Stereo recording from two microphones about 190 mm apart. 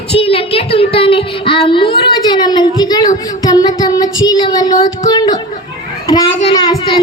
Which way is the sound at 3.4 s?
20° left (ahead or behind).